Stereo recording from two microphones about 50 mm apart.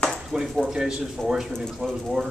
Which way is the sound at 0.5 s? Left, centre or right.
Centre.